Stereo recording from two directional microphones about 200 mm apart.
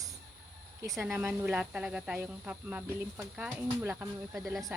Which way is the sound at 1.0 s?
5° right (ahead or behind).